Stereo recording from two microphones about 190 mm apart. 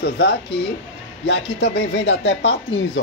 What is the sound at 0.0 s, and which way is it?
A man's voice, 60° left (ahead or behind).